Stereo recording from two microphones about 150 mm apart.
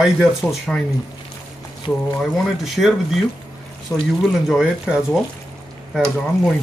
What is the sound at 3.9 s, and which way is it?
Speech, 15° left (ahead or behind).